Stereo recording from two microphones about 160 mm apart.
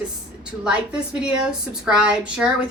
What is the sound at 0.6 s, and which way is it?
A woman's voice, 5° right (ahead or behind).